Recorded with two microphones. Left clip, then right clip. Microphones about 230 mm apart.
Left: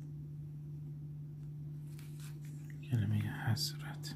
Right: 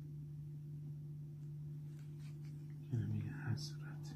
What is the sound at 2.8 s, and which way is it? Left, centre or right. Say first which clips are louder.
Speech: left 6 dB; left.